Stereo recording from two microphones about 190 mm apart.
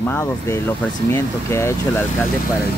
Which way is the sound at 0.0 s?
10° left (ahead or behind).